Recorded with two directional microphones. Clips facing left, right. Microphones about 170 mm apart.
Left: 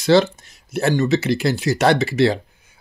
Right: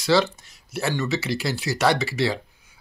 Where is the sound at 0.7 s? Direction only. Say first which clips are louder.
Left 7 dB; 50° left (ahead or behind).